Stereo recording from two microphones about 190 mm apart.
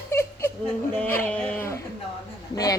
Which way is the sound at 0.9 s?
10° left (ahead or behind).